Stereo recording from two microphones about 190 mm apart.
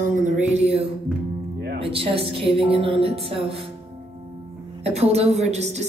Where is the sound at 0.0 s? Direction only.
40° right (ahead or behind).